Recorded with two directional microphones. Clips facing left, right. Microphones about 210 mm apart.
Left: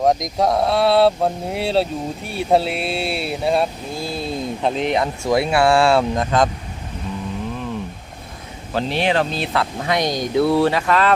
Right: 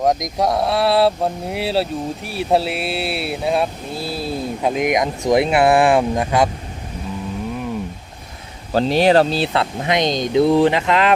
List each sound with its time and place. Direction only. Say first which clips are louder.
0.0 s speech: left 1 dB; centre (ahead or behind)
8.7 s speech: right 6 dB; 40° right (ahead or behind); by 11.1 s 20° right (ahead or behind)